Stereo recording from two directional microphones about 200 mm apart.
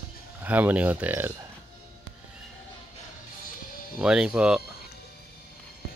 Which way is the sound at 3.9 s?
5° right (ahead or behind).